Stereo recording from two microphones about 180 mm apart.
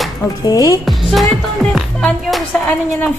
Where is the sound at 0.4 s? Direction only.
20° left (ahead or behind).